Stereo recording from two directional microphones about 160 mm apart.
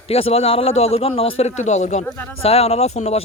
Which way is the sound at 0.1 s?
40° left (ahead or behind).